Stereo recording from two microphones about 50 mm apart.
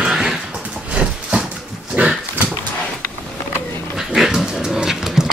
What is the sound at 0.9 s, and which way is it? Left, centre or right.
Horse, right.